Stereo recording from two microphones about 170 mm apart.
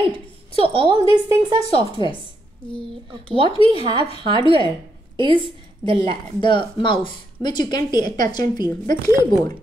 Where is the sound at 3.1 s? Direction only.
35° right (ahead or behind).